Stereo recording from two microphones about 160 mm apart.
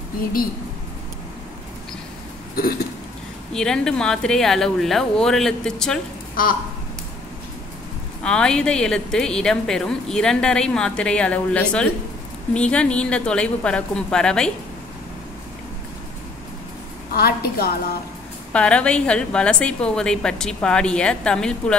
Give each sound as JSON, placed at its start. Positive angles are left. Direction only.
{"t": 3.5, "sound": "a woman's voice", "side_deg": 5}
{"t": 6.4, "sound": "speech", "side_deg": 65}
{"t": 8.2, "sound": "a woman's voice", "side_deg": 5}
{"t": 17.1, "sound": "a woman's voice", "side_deg": 75}
{"t": 18.5, "sound": "a woman's voice", "side_deg": 5}